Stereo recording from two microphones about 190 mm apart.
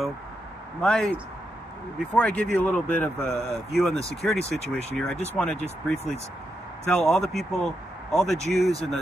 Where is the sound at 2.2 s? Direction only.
5° left (ahead or behind).